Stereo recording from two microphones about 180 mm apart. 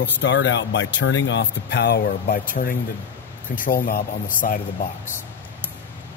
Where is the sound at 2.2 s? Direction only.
50° left (ahead or behind).